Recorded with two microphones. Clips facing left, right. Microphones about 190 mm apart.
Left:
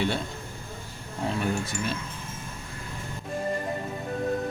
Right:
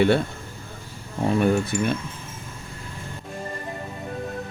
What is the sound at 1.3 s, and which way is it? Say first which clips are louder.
Speech: right 9 dB; 60° right (ahead or behind).